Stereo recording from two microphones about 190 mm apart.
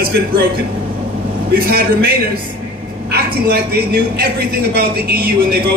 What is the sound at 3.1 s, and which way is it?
A man's voice, 55° right (ahead or behind).